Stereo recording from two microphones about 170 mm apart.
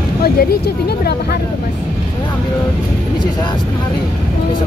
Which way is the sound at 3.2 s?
25° left (ahead or behind).